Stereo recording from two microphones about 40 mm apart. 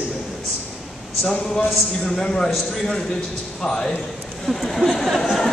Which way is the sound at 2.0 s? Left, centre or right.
Centre.